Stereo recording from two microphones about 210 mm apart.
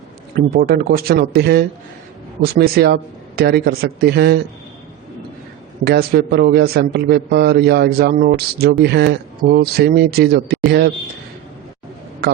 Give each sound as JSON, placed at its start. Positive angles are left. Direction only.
{"t": 0.3, "sound": "a man's voice", "side_deg": -45}
{"t": 5.8, "sound": "a man's voice", "side_deg": -50}
{"t": 12.2, "sound": "a man's voice", "side_deg": -50}